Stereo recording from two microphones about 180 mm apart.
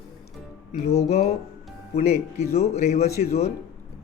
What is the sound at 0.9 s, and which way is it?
A man's voice, 35° left (ahead or behind).